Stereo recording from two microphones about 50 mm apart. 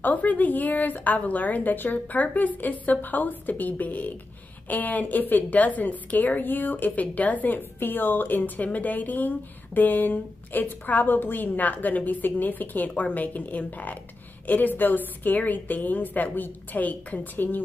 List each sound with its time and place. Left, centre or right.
0.0 s a woman's voice: left